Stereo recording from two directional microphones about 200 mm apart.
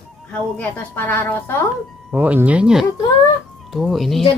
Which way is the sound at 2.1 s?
10° right (ahead or behind).